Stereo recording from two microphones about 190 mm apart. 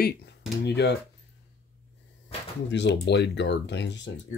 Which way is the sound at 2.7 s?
65° left (ahead or behind).